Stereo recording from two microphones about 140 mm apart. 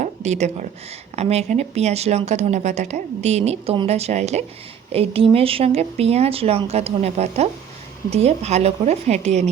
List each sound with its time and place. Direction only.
0.0 s speech: 55° right (ahead or behind)